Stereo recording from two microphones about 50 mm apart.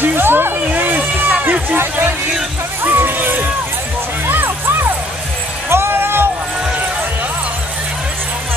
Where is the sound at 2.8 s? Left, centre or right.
Right.